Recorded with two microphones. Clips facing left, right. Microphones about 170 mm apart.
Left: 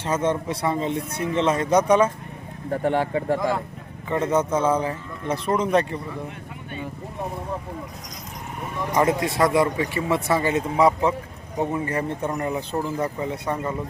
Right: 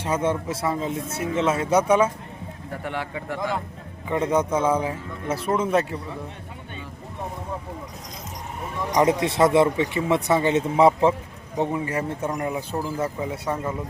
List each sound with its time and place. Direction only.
0.0 s speech: 10° right (ahead or behind)
2.8 s speech: 40° left (ahead or behind)
4.1 s speech: 10° right (ahead or behind)
8.9 s speech: 15° right (ahead or behind)
11.6 s speech: 10° right (ahead or behind)